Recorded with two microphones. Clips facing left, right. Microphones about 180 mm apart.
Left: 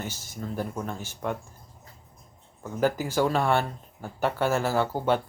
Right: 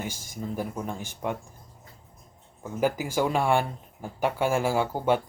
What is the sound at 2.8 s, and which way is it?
Speech, 10° right (ahead or behind).